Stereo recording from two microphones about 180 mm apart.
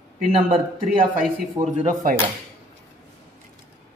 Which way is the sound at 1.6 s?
45° right (ahead or behind).